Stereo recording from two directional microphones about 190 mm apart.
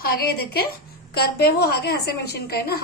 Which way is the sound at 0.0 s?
55° left (ahead or behind).